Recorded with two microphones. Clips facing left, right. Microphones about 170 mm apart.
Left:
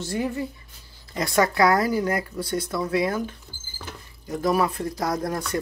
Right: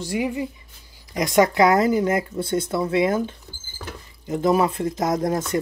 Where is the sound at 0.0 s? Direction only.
15° right (ahead or behind).